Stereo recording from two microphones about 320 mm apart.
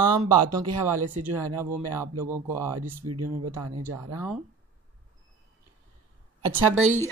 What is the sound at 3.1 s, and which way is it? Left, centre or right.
Speech, right.